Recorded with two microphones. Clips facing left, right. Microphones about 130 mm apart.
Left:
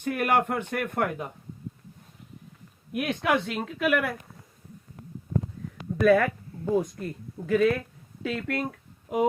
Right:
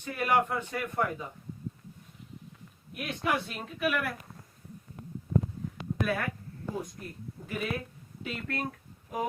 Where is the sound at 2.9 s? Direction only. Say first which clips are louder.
Left 6 dB; 75° left (ahead or behind).